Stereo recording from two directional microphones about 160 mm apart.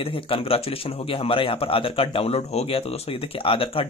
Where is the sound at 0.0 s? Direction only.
35° left (ahead or behind).